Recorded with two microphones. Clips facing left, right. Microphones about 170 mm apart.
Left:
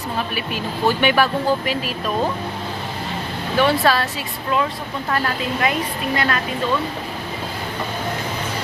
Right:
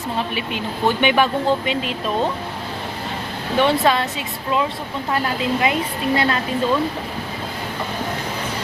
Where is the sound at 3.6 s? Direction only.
20° right (ahead or behind).